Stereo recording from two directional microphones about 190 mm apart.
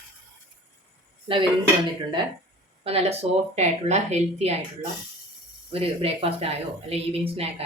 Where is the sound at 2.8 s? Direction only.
30° right (ahead or behind).